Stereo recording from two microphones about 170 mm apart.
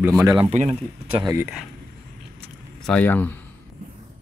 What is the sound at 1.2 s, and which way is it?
Speech, 20° right (ahead or behind).